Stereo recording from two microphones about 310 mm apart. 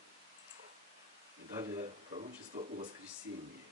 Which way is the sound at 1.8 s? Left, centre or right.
Right.